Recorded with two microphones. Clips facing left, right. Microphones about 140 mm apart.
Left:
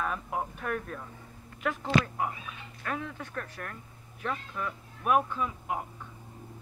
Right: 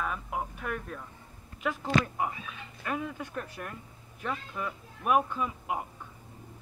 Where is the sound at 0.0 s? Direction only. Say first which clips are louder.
Left 1 dB; centre (ahead or behind).